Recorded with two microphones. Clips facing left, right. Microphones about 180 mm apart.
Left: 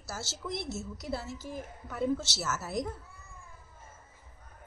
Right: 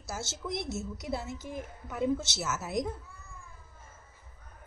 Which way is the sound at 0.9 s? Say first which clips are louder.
Left 1 dB; centre (ahead or behind).